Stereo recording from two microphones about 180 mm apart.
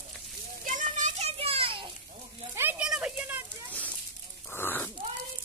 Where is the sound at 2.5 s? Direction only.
10° right (ahead or behind).